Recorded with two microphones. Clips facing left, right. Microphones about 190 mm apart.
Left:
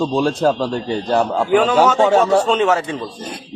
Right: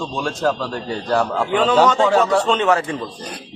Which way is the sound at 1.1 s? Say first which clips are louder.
Left 4 dB; 20° left (ahead or behind).